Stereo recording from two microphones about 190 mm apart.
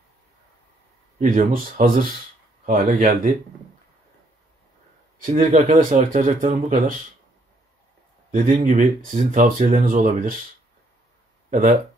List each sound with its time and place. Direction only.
1.2 s speech: 45° right (ahead or behind)
5.2 s speech: 40° right (ahead or behind)
8.3 s speech: 40° right (ahead or behind)